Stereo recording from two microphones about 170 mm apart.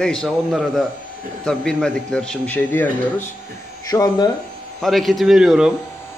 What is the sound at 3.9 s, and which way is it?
Speech, 25° left (ahead or behind).